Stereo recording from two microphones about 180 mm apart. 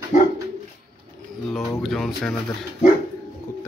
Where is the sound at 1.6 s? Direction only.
15° left (ahead or behind).